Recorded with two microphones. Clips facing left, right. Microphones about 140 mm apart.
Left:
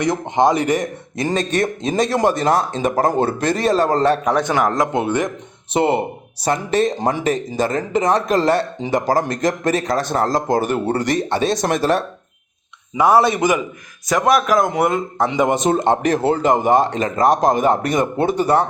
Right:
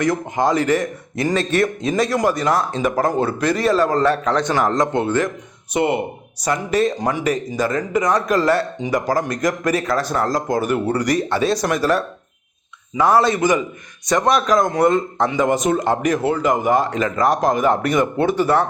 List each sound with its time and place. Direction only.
0.0 s speech: 20° left (ahead or behind)
5.7 s speech: 30° left (ahead or behind)
13.0 s a man's voice: 10° left (ahead or behind)
15.3 s speech: 20° left (ahead or behind)